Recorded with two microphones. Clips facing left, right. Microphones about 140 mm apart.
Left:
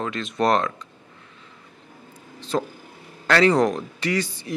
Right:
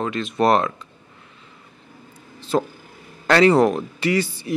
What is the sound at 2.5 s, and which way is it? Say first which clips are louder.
Speech: right 4 dB; 20° right (ahead or behind).